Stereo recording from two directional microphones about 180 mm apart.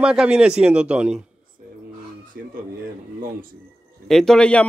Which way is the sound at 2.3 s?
60° right (ahead or behind).